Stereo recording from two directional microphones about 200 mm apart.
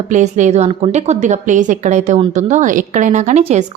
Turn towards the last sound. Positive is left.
turn(degrees=-35)  # may be behind; listen again after turning